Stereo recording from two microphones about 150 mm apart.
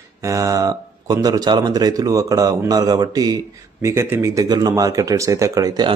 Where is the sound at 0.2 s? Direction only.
20° right (ahead or behind).